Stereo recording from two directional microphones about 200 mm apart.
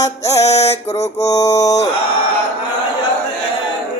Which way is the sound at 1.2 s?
20° left (ahead or behind).